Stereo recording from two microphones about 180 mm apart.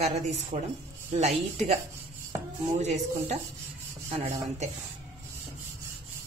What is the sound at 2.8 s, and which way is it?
A woman's voice, 40° right (ahead or behind).